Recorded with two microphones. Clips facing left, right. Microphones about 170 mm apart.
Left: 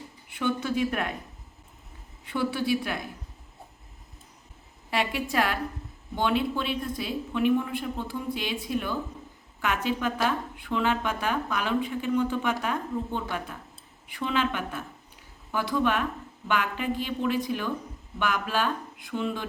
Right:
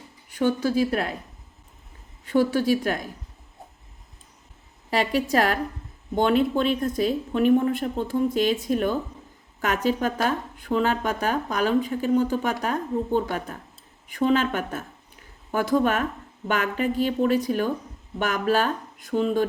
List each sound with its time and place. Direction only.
0.3 s speech: 40° right (ahead or behind)
2.2 s speech: 40° right (ahead or behind)
4.9 s speech: 40° right (ahead or behind)